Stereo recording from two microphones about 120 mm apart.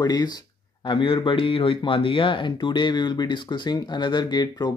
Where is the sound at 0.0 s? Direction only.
35° left (ahead or behind).